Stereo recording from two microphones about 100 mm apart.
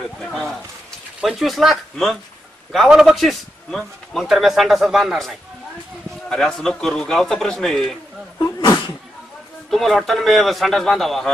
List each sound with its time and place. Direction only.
0.0 s a man's voice: 5° left (ahead or behind)
8.4 s a sound: 45° left (ahead or behind)
9.7 s a man's voice: centre (ahead or behind)